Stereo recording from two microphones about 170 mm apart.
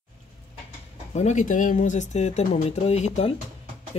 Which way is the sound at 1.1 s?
45° left (ahead or behind).